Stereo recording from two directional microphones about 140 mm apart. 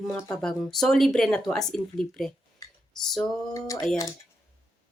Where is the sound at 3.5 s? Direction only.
25° left (ahead or behind).